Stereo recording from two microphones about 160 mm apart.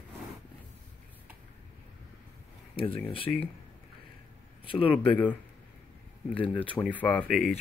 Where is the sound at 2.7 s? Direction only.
35° left (ahead or behind).